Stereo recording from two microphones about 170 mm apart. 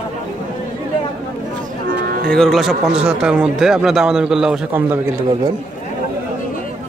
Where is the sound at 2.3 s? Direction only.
Centre (ahead or behind).